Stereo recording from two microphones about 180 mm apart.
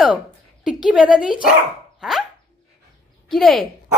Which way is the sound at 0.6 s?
5° right (ahead or behind).